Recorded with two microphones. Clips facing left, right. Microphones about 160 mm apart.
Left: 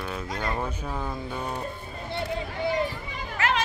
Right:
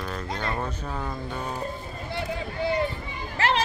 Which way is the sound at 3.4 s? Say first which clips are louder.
Right 2 dB; 30° right (ahead or behind).